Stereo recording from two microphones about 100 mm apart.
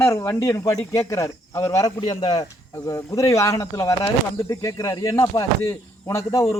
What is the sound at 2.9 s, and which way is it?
Speech, 30° left (ahead or behind).